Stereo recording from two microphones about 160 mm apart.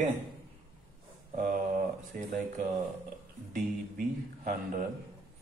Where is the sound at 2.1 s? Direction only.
60° right (ahead or behind).